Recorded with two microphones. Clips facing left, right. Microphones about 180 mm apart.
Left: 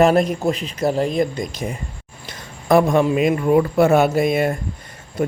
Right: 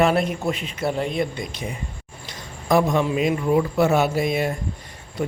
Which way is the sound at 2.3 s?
55° left (ahead or behind).